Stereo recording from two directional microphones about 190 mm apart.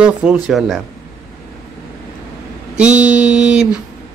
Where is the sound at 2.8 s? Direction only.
5° right (ahead or behind).